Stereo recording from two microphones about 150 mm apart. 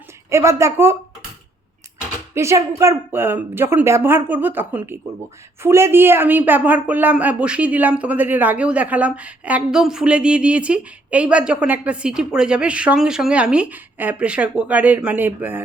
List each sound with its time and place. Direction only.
0.3 s a woman's voice: 20° right (ahead or behind)
2.3 s a woman's voice: 20° right (ahead or behind)